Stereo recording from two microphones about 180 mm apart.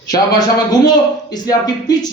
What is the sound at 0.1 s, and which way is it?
A man's voice, 20° left (ahead or behind).